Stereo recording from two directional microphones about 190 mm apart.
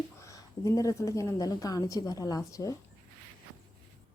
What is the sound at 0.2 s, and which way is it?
A woman's voice, 15° left (ahead or behind).